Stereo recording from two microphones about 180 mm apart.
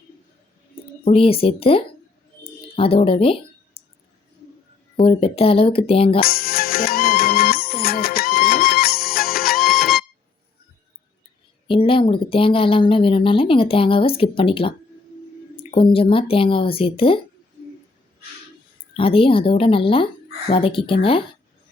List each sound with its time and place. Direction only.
1.0 s speech: 30° left (ahead or behind)
5.0 s speech: 30° left (ahead or behind)
6.1 s music: 55° left (ahead or behind)
9.8 s music: centre (ahead or behind)
11.7 s speech: 30° left (ahead or behind)
15.7 s speech: 30° left (ahead or behind)
18.9 s speech: 30° left (ahead or behind)